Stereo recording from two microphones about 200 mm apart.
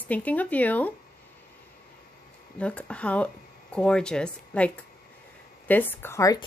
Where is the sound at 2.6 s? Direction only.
5° left (ahead or behind).